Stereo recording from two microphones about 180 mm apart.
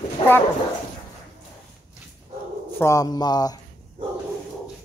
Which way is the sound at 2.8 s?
20° left (ahead or behind).